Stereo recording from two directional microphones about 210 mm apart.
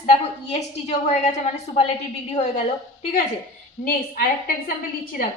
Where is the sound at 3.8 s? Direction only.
45° left (ahead or behind).